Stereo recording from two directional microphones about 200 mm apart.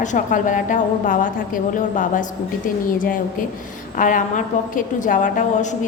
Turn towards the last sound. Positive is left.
turn(degrees=40)  # may be behind; listen again after turning